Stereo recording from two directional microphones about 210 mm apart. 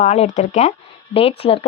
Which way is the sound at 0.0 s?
35° left (ahead or behind).